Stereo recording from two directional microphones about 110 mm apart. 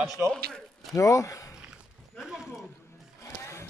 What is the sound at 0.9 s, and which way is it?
Speech, 30° left (ahead or behind).